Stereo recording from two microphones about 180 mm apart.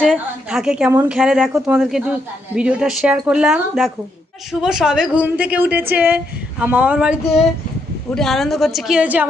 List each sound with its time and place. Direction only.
0.0 s a woman's voice: centre (ahead or behind)